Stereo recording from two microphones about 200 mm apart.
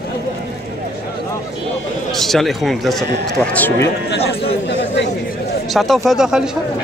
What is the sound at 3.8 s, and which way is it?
Speech, 55° left (ahead or behind).